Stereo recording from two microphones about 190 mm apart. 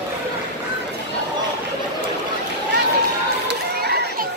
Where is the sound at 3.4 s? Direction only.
60° right (ahead or behind).